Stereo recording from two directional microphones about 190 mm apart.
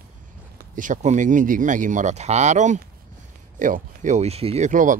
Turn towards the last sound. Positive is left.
turn(degrees=-40)  # may be behind; listen again after turning